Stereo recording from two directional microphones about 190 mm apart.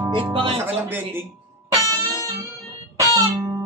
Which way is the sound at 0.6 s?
10° right (ahead or behind).